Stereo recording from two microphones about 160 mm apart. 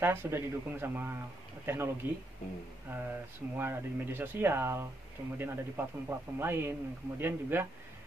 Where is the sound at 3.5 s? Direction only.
15° right (ahead or behind).